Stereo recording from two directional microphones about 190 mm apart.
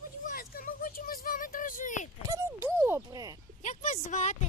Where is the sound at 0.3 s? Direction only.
50° left (ahead or behind).